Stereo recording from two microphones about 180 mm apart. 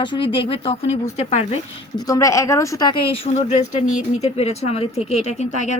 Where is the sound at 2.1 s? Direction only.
15° left (ahead or behind).